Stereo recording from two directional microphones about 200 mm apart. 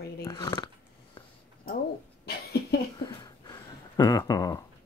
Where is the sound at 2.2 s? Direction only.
50° left (ahead or behind).